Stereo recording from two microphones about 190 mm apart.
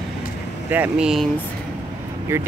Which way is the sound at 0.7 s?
5° right (ahead or behind).